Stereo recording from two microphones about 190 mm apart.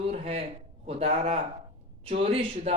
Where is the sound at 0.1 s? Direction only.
30° right (ahead or behind).